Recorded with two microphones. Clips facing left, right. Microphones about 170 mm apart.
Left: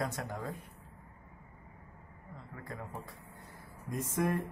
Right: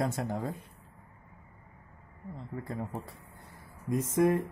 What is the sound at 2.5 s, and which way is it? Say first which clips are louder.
Speech: right 10 dB; 30° right (ahead or behind).